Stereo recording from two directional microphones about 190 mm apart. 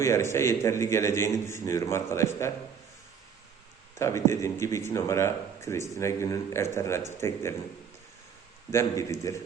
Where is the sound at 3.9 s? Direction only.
15° left (ahead or behind).